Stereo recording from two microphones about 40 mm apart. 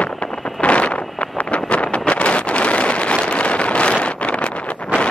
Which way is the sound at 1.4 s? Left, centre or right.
Left.